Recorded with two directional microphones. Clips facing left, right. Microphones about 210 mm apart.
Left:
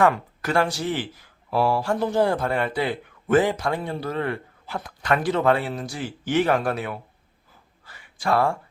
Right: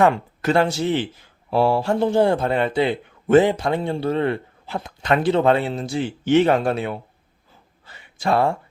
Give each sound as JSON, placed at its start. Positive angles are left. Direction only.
{"t": 0.0, "sound": "speech", "side_deg": -25}